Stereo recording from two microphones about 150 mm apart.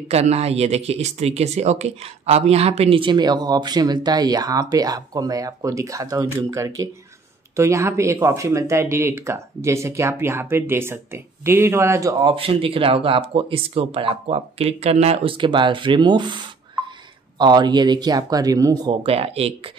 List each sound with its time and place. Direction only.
0.1 s speech: 45° right (ahead or behind); by 12.4 s 25° right (ahead or behind)
12.4 s speech: 40° right (ahead or behind)
19.0 s speech: 40° right (ahead or behind)